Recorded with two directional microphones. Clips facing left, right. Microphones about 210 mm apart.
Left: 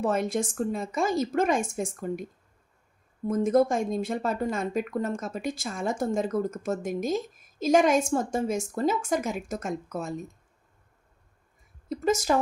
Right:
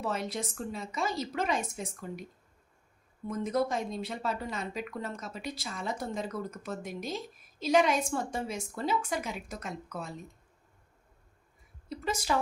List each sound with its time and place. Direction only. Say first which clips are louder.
0.0 s speech: left 8 dB; 50° left (ahead or behind)
3.2 s speech: left 8 dB; 50° left (ahead or behind)
11.9 s speech: left 7 dB; 45° left (ahead or behind)